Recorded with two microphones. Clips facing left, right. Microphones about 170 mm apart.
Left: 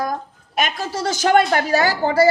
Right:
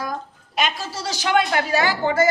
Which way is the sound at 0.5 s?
50° left (ahead or behind).